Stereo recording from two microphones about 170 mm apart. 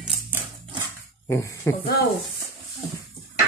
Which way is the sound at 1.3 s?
15° left (ahead or behind).